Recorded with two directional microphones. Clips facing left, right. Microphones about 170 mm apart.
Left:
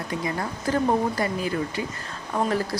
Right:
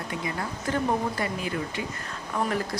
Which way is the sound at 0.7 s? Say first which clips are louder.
Left 4 dB; 35° left (ahead or behind).